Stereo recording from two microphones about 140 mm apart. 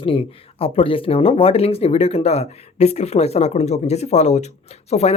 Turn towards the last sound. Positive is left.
turn(degrees=50)  # may be behind; listen again after turning